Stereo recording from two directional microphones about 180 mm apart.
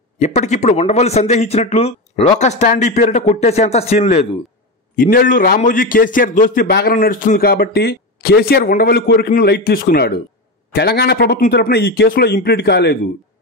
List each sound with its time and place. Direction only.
0.2 s a man's voice: 40° left (ahead or behind)
4.9 s a man's voice: 55° left (ahead or behind)